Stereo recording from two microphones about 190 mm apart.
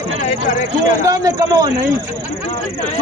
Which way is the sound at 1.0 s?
20° right (ahead or behind).